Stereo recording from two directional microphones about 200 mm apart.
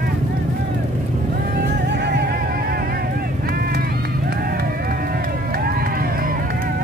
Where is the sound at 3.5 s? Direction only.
50° right (ahead or behind).